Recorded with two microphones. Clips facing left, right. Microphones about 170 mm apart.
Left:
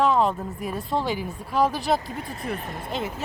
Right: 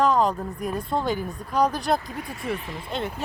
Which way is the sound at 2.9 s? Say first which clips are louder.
Even; 5° left (ahead or behind).